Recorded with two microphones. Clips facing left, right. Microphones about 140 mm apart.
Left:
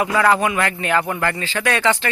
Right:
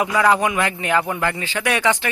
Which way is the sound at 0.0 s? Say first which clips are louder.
Even; 15° right (ahead or behind).